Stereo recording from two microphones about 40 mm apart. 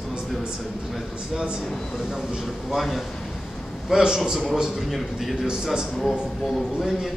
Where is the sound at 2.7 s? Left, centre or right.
Centre.